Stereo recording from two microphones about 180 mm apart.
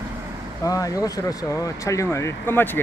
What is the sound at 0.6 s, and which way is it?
Speech, 20° left (ahead or behind).